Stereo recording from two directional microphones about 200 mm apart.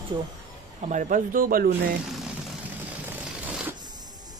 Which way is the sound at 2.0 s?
Centre (ahead or behind).